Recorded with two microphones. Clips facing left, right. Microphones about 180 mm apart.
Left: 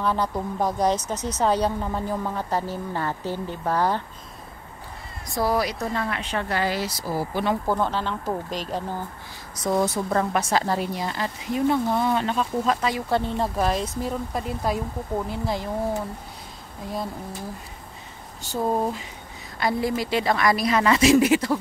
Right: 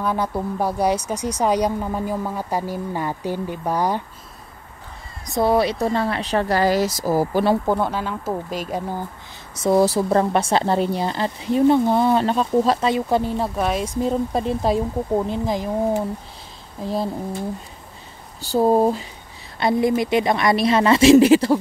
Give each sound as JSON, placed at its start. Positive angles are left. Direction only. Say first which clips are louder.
{"t": 0.0, "sound": "speech", "louder": "right 2 dB", "side_deg": -10}
{"t": 5.2, "sound": "speech", "louder": "right 5 dB", "side_deg": -25}
{"t": 7.6, "sound": "speech", "louder": "right 3 dB", "side_deg": -15}
{"t": 9.6, "sound": "speech", "louder": "right 6 dB", "side_deg": -30}
{"t": 12.9, "sound": "speech", "louder": "right 4 dB", "side_deg": -15}
{"t": 13.4, "sound": "speech", "louder": "right 2 dB", "side_deg": 0}
{"t": 13.8, "sound": "speech", "louder": "right 7 dB", "side_deg": -25}
{"t": 16.8, "sound": "speech", "louder": "right 6 dB", "side_deg": -30}
{"t": 18.4, "sound": "speech", "louder": "right 8 dB", "side_deg": -35}
{"t": 19.6, "sound": "speech", "louder": "right 6 dB", "side_deg": -25}